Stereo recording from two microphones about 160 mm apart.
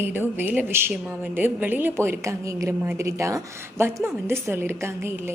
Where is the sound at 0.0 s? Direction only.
15° right (ahead or behind).